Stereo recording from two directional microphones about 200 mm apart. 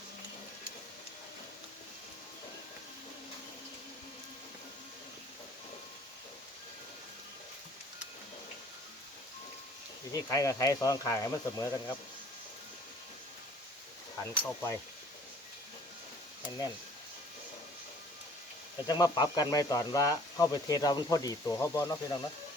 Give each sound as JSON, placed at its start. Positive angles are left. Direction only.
{"t": 10.1, "sound": "speech", "side_deg": 15}
{"t": 14.2, "sound": "speech", "side_deg": 15}
{"t": 18.9, "sound": "speech", "side_deg": 20}